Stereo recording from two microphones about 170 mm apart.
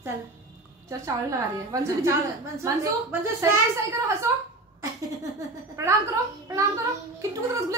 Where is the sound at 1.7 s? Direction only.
15° right (ahead or behind).